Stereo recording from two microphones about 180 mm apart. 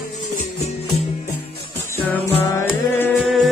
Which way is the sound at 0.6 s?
35° left (ahead or behind).